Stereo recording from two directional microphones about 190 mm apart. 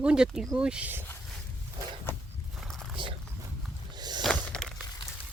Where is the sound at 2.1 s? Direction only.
10° left (ahead or behind).